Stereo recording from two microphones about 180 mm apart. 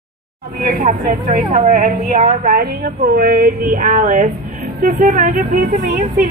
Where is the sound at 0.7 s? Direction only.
45° right (ahead or behind).